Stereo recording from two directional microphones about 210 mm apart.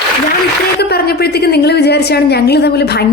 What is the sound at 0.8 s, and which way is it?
A woman's voice, 50° left (ahead or behind).